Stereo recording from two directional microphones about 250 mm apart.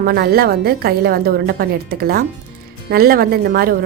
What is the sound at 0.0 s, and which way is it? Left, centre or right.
A woman's voice, right.